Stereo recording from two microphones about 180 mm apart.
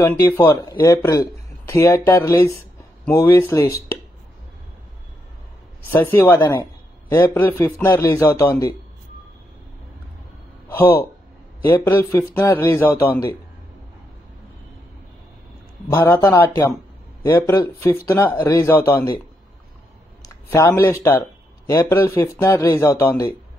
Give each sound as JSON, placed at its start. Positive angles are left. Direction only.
{"t": 0.0, "sound": "a man's voice", "side_deg": 15}
{"t": 5.9, "sound": "a man's voice", "side_deg": 10}
{"t": 10.7, "sound": "a man's voice", "side_deg": 10}
{"t": 15.9, "sound": "a man's voice", "side_deg": 15}
{"t": 20.4, "sound": "a man's voice", "side_deg": 15}